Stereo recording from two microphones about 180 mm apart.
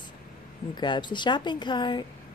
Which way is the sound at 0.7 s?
25° left (ahead or behind).